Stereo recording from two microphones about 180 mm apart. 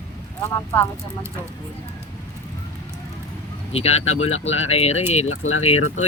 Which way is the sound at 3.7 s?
35° left (ahead or behind).